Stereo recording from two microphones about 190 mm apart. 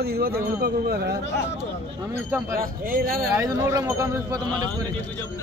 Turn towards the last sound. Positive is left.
turn(degrees=-15)  # may be behind; listen again after turning